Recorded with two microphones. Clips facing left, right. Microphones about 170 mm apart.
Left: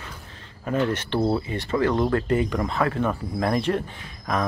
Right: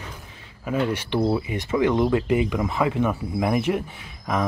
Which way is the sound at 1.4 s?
15° right (ahead or behind).